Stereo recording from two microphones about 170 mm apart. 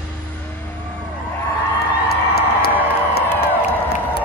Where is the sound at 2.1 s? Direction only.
70° left (ahead or behind).